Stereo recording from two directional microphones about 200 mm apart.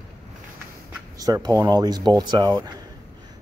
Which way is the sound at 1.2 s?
20° right (ahead or behind).